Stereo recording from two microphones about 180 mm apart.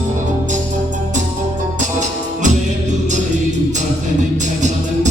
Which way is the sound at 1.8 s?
40° right (ahead or behind).